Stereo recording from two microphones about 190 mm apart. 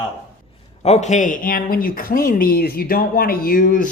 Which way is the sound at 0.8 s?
35° left (ahead or behind).